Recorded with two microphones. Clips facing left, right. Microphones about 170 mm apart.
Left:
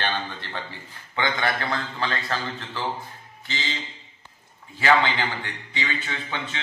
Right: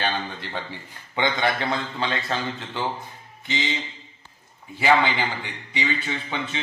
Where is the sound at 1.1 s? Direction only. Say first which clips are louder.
Right 2 dB; 20° right (ahead or behind).